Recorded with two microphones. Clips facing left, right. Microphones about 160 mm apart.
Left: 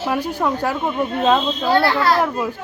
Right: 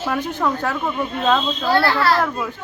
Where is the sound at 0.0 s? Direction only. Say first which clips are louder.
Left 1 dB; 10° left (ahead or behind).